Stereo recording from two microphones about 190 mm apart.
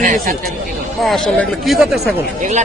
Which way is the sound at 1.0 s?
Centre (ahead or behind).